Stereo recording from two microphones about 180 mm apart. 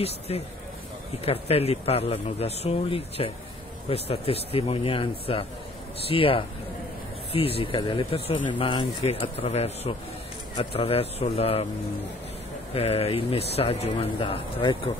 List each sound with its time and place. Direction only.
0.3 s speech: 35° left (ahead or behind)
12.7 s speech: 35° left (ahead or behind)